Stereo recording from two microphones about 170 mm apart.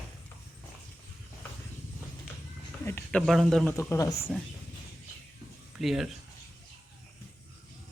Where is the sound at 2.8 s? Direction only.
10° left (ahead or behind).